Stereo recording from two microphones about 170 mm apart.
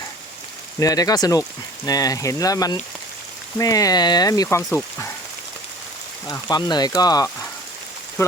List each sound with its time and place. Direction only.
0.8 s speech: 20° left (ahead or behind)
6.2 s speech: 20° left (ahead or behind)